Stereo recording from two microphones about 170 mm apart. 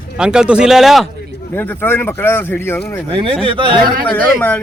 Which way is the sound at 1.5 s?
10° left (ahead or behind).